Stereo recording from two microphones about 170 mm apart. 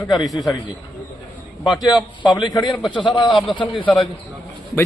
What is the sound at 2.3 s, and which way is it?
A man's voice, 25° left (ahead or behind).